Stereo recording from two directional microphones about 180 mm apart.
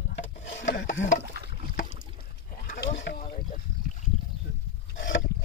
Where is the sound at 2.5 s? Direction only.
50° left (ahead or behind).